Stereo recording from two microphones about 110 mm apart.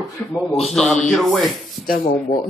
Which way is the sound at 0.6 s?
Centre (ahead or behind).